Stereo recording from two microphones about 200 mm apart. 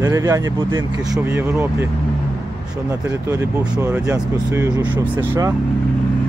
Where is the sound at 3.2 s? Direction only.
15° right (ahead or behind).